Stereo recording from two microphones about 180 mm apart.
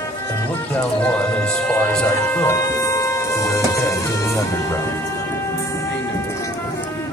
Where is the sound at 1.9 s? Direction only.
10° left (ahead or behind).